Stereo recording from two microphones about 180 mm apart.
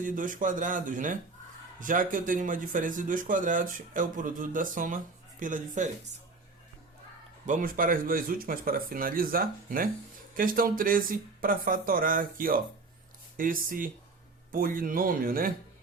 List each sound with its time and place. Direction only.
0.0 s speech: 50° right (ahead or behind)
7.4 s speech: 50° right (ahead or behind)